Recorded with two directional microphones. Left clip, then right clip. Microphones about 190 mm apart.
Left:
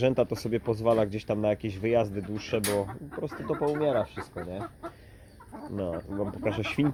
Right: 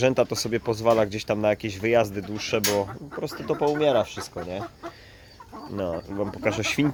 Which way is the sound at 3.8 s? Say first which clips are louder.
Right 7 dB; 15° right (ahead or behind).